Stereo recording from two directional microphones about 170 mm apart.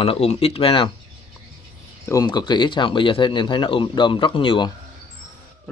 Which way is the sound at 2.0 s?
20° left (ahead or behind).